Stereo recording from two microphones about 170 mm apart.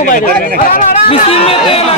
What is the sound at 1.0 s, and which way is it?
Speech, 35° left (ahead or behind).